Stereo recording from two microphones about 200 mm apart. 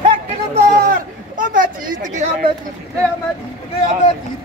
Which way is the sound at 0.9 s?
45° right (ahead or behind).